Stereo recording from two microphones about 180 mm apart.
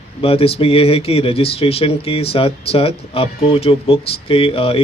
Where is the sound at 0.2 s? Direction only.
30° left (ahead or behind).